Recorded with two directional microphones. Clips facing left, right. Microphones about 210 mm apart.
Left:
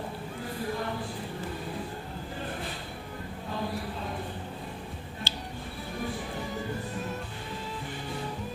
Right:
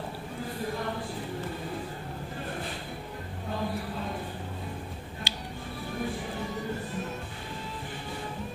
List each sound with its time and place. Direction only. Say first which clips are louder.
5.3 s music: left 1 dB; 15° right (ahead or behind)